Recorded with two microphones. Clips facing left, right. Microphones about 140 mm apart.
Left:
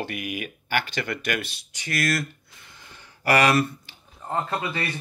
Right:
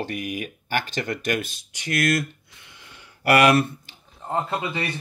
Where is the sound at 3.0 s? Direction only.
55° right (ahead or behind).